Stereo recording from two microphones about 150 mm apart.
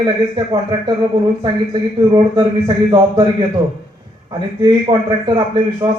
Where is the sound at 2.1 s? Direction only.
30° right (ahead or behind).